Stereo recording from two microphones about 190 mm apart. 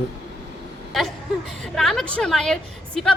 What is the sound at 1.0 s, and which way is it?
A woman's voice, centre (ahead or behind).